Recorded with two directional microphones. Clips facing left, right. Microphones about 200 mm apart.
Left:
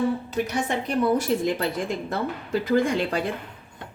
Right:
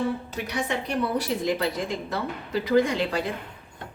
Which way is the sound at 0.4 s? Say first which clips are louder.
Left 2 dB; 45° left (ahead or behind).